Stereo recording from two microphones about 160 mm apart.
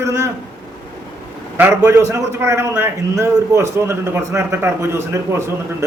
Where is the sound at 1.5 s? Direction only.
15° right (ahead or behind).